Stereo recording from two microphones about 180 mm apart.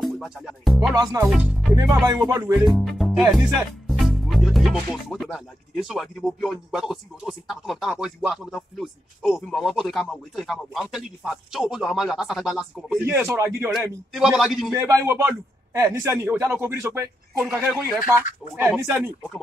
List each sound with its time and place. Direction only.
0.0 s music: centre (ahead or behind)
1.2 s speech: 5° right (ahead or behind)
2.0 s a man's voice: 20° right (ahead or behind)
2.6 s speech: centre (ahead or behind)
14.1 s speech: centre (ahead or behind)
14.8 s a man's voice: 15° right (ahead or behind)